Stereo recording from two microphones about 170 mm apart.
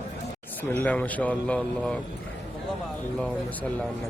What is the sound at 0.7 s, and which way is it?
Speech, 10° left (ahead or behind).